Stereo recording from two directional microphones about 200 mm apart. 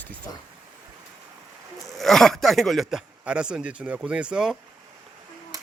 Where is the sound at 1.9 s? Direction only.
Centre (ahead or behind).